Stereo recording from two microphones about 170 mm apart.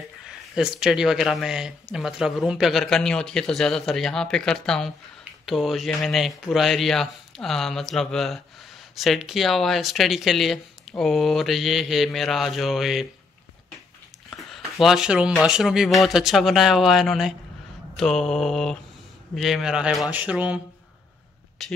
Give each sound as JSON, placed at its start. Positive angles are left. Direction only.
{"t": 0.6, "sound": "speech", "side_deg": -5}
{"t": 14.3, "sound": "speech", "side_deg": 0}